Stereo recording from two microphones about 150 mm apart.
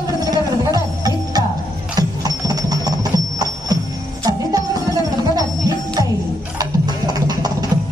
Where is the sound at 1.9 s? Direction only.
25° right (ahead or behind).